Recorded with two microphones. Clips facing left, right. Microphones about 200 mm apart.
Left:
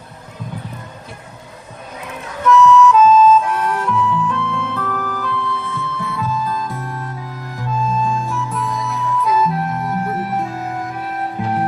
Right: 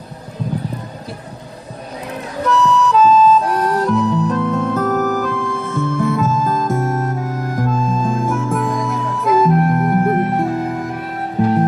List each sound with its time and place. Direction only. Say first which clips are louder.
2.0 s music: left 2 dB; 35° right (ahead or behind); by 10.6 s 50° right (ahead or behind)